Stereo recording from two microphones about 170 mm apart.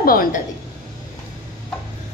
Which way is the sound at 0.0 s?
60° left (ahead or behind).